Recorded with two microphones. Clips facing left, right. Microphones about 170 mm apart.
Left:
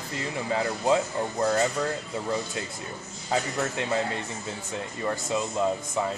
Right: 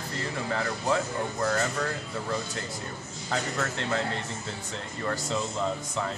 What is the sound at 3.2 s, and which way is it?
Speech, 15° left (ahead or behind).